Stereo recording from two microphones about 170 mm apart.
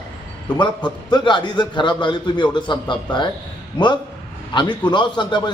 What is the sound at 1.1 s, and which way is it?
A man's voice, 25° left (ahead or behind).